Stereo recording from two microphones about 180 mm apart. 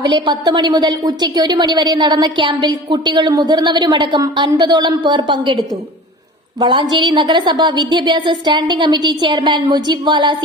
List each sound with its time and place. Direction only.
0.0 s a woman's voice: 25° right (ahead or behind)
6.6 s a woman's voice: 25° right (ahead or behind)